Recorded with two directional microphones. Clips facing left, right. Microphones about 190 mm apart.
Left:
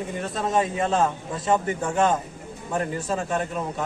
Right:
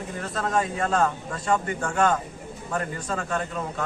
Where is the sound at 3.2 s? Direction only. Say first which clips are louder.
Even; 15° left (ahead or behind).